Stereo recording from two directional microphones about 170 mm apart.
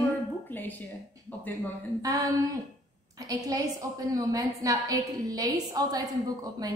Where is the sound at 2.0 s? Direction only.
20° right (ahead or behind).